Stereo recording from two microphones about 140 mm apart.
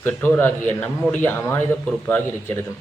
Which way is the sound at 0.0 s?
15° left (ahead or behind).